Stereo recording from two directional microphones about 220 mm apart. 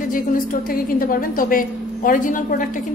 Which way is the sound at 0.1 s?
40° left (ahead or behind).